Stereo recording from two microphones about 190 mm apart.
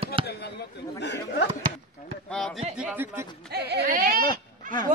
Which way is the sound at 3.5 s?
60° right (ahead or behind).